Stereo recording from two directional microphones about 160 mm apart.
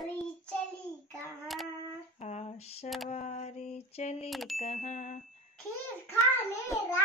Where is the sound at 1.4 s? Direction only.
Centre (ahead or behind).